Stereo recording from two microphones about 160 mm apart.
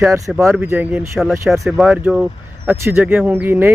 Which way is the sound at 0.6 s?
10° right (ahead or behind).